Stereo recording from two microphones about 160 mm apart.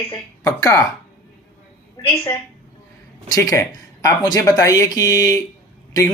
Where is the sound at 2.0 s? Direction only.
25° left (ahead or behind).